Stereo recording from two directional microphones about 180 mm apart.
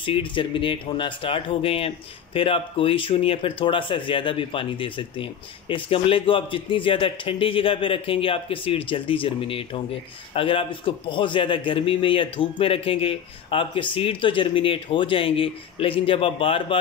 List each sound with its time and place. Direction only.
0.0 s speech: 30° left (ahead or behind)